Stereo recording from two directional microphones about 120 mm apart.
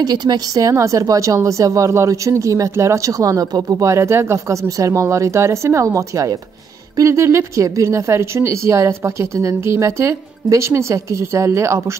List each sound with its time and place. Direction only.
0.0 s a woman's voice: 35° right (ahead or behind)